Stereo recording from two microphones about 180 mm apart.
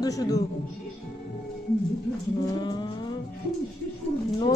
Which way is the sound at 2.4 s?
20° left (ahead or behind).